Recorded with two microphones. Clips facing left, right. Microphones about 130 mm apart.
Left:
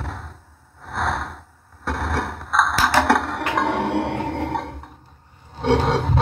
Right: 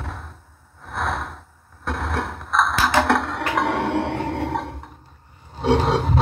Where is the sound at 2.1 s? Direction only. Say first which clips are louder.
Left 1 dB; 35° left (ahead or behind).